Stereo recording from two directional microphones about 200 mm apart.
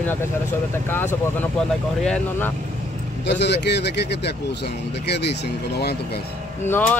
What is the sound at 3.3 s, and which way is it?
Speech, 60° left (ahead or behind).